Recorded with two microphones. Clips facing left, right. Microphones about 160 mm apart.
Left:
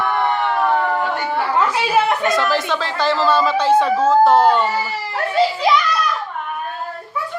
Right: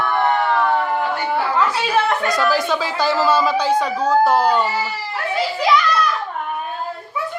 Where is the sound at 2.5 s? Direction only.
5° right (ahead or behind).